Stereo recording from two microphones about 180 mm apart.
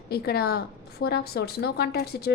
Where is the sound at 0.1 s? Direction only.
60° left (ahead or behind).